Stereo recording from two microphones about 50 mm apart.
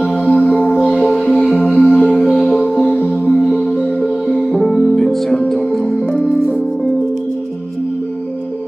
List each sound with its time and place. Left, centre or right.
0.0 s music: left
3.1 s music: left